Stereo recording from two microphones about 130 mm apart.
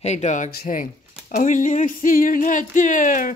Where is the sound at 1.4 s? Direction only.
90° left.